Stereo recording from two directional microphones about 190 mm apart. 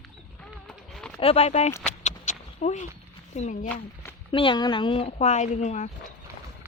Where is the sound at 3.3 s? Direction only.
35° left (ahead or behind).